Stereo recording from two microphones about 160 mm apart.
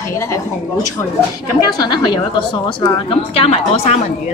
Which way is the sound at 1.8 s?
30° left (ahead or behind).